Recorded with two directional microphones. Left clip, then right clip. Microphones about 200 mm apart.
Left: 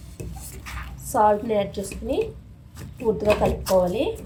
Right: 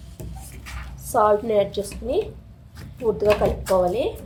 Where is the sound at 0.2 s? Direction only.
Centre (ahead or behind).